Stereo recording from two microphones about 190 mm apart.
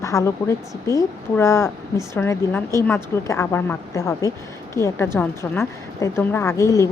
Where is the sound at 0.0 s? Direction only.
15° left (ahead or behind).